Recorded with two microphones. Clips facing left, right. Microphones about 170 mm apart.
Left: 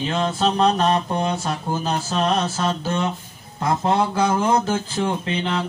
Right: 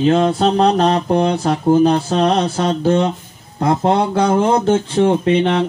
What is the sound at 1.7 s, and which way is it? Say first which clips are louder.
Speech: right 15 dB; 60° right (ahead or behind).